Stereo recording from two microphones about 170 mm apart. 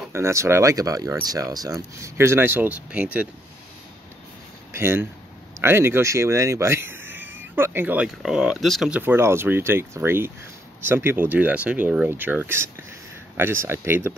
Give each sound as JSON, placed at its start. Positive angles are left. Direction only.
{"t": 0.1, "sound": "speech", "side_deg": -15}
{"t": 4.7, "sound": "speech", "side_deg": -15}